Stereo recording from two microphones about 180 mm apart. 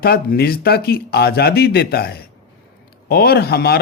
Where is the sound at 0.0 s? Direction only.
55° left (ahead or behind).